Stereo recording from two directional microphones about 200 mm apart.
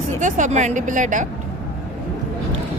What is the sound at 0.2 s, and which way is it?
Speech, 40° right (ahead or behind).